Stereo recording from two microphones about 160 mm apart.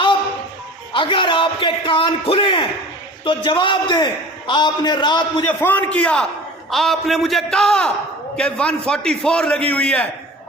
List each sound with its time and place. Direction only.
0.9 s a man's voice: 30° left (ahead or behind)
5.5 s a man's voice: 10° left (ahead or behind)